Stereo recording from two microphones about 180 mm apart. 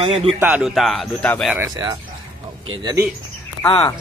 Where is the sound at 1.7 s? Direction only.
20° right (ahead or behind).